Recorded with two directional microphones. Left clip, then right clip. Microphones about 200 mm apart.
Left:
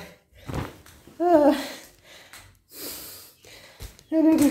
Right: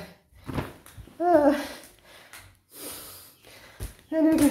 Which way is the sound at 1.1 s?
15° left (ahead or behind).